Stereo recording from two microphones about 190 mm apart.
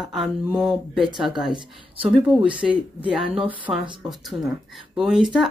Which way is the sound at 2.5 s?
5° right (ahead or behind).